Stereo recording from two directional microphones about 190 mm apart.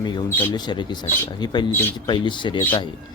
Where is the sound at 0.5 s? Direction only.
25° left (ahead or behind).